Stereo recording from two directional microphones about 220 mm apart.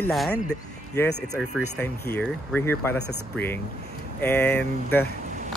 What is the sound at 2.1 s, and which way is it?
Speech, 10° left (ahead or behind).